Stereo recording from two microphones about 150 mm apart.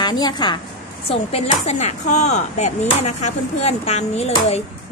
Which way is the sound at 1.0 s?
45° left (ahead or behind).